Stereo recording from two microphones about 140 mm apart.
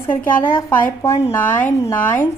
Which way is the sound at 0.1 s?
15° left (ahead or behind).